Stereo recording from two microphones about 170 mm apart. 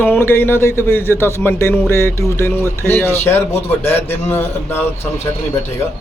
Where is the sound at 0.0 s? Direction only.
10° left (ahead or behind).